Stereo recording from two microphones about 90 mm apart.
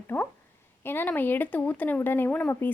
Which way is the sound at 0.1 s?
20° left (ahead or behind).